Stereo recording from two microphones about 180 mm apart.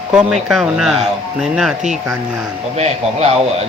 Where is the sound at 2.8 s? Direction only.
35° right (ahead or behind).